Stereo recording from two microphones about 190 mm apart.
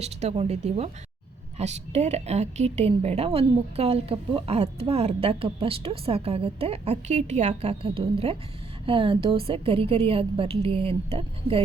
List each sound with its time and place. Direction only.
0.0 s a woman's voice: 35° right (ahead or behind)